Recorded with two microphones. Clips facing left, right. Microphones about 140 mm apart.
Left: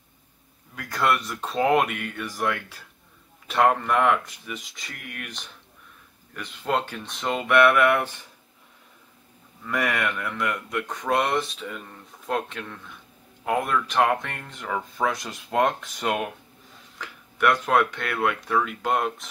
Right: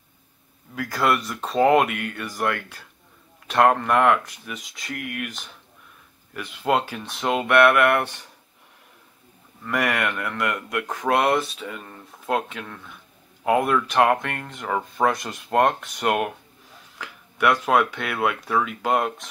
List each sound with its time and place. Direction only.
0.7 s speech: 5° right (ahead or behind)
9.7 s speech: centre (ahead or behind)
15.0 s speech: 35° right (ahead or behind)
15.5 s speech: 60° right (ahead or behind)
17.0 s speech: 5° right (ahead or behind)